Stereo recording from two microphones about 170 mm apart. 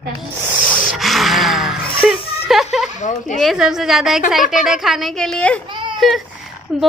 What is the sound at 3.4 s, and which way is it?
Speech, centre (ahead or behind).